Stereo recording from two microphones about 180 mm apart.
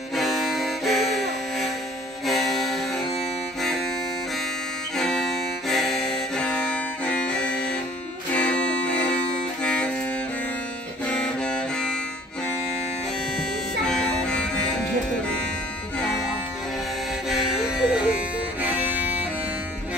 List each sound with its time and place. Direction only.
0.1 s music: centre (ahead or behind)
4.9 s music: 5° left (ahead or behind)
11.1 s music: 5° left (ahead or behind)
13.8 s music: 5° left (ahead or behind)
17.3 s music: centre (ahead or behind)